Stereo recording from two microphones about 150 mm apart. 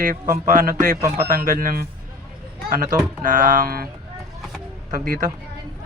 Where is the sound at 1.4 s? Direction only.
65° right (ahead or behind).